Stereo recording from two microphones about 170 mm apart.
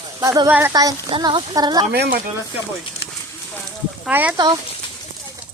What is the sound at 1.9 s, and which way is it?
Speech, 70° right (ahead or behind).